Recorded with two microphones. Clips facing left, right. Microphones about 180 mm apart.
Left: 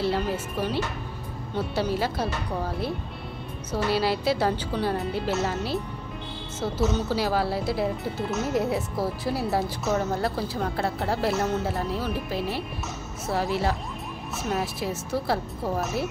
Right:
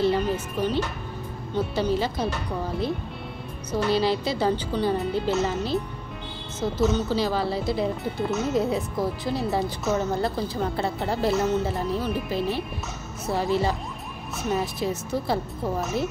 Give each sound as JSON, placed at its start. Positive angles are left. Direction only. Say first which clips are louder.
{"t": 0.0, "sound": "music", "louder": "right 3 dB", "side_deg": 5}
{"t": 1.8, "sound": "a woman's voice", "louder": "right 1 dB", "side_deg": 5}
{"t": 3.7, "sound": "a woman's voice", "louder": "right 2 dB", "side_deg": 5}